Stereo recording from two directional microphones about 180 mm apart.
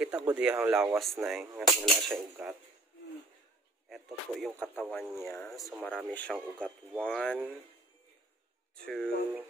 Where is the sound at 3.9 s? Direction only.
Centre (ahead or behind).